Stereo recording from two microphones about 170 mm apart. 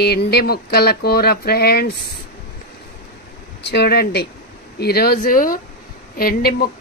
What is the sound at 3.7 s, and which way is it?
Speech, 75° left (ahead or behind).